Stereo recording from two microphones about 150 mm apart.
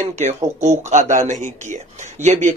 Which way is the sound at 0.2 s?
50° right (ahead or behind).